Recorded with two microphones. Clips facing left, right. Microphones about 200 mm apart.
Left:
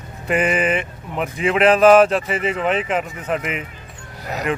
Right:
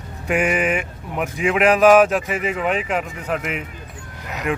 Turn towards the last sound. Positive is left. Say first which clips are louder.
# left 4 dB
turn(degrees=35)  # may be behind; listen again after turning